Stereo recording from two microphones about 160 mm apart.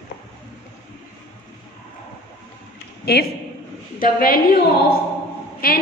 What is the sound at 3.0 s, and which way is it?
Speech, 85° left.